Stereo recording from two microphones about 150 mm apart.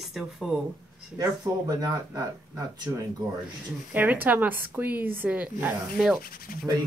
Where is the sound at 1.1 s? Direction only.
25° right (ahead or behind).